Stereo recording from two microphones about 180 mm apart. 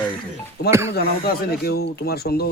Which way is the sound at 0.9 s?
60° left (ahead or behind).